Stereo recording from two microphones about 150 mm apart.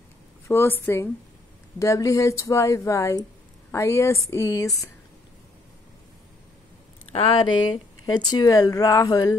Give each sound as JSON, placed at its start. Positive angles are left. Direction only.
{"t": 0.5, "sound": "a woman's voice", "side_deg": 15}
{"t": 7.1, "sound": "speech", "side_deg": 40}